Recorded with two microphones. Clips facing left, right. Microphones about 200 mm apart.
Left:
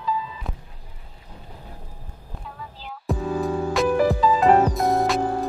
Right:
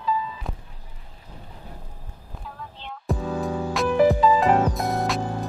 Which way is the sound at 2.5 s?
5° left (ahead or behind).